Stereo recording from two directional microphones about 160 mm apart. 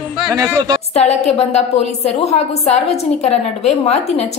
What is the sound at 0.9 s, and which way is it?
A woman's voice, 45° left (ahead or behind).